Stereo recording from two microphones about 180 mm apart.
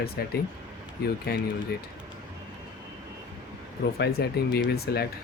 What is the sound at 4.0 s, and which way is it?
Speech, 60° left (ahead or behind).